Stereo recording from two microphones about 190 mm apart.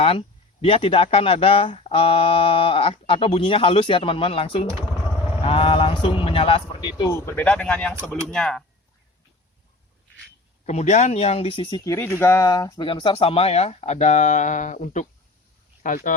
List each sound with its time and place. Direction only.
0.0 s speech: 30° left (ahead or behind)
7.1 s speech: 15° left (ahead or behind)
10.7 s speech: 35° left (ahead or behind)